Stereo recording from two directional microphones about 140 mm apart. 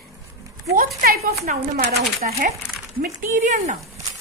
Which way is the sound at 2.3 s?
50° right (ahead or behind).